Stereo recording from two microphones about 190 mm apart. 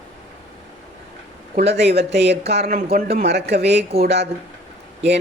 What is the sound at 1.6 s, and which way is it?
Speech, 60° right (ahead or behind).